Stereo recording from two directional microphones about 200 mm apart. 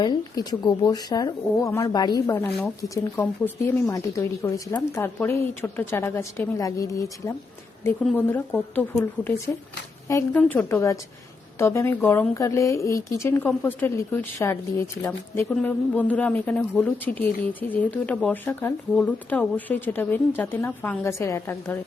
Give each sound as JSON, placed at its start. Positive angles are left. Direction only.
{"t": 0.0, "sound": "a woman's voice", "side_deg": 20}